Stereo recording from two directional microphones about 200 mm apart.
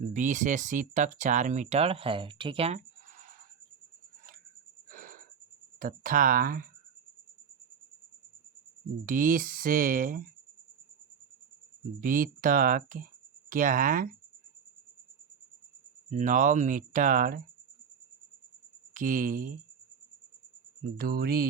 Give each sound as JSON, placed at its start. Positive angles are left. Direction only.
{"t": 0.1, "sound": "speech", "side_deg": -40}
{"t": 4.9, "sound": "a sound", "side_deg": -45}
{"t": 5.8, "sound": "speech", "side_deg": -45}
{"t": 9.0, "sound": "speech", "side_deg": -40}
{"t": 11.9, "sound": "speech", "side_deg": -45}
{"t": 16.0, "sound": "speech", "side_deg": -40}
{"t": 18.9, "sound": "speech", "side_deg": -40}
{"t": 21.0, "sound": "speech", "side_deg": -50}